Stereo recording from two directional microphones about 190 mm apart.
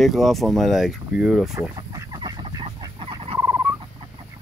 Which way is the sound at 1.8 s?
20° right (ahead or behind).